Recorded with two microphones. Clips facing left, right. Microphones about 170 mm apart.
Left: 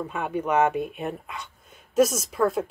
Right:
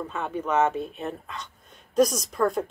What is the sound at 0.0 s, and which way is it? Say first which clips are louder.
Speech: left 2 dB; 10° left (ahead or behind).